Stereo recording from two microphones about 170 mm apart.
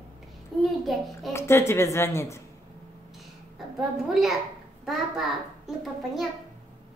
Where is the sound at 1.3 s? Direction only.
15° left (ahead or behind).